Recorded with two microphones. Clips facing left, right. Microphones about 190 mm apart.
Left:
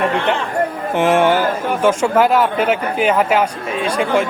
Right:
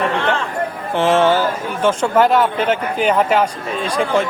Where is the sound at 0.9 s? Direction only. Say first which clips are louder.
Even; 15° left (ahead or behind).